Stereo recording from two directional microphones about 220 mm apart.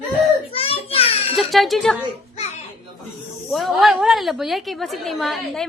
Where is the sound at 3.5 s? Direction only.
Centre (ahead or behind).